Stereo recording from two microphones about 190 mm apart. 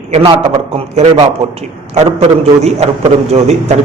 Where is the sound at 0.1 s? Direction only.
30° right (ahead or behind).